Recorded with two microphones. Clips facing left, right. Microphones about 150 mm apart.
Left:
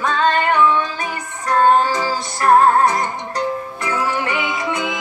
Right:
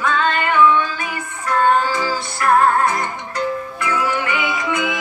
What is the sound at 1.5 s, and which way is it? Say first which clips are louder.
Music: left 2 dB; 40° left (ahead or behind).